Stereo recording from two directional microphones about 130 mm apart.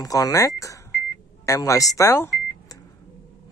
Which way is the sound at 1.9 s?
20° left (ahead or behind).